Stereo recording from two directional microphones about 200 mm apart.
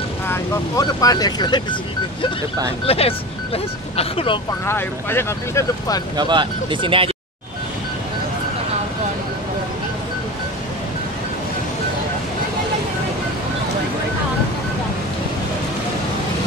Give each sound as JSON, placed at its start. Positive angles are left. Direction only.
{"t": 0.3, "sound": "speech", "side_deg": 15}
{"t": 2.9, "sound": "speech", "side_deg": 30}
{"t": 4.6, "sound": "speech", "side_deg": 10}
{"t": 6.1, "sound": "speech", "side_deg": -25}